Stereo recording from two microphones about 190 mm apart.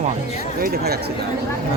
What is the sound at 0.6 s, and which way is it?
Speech, 55° right (ahead or behind).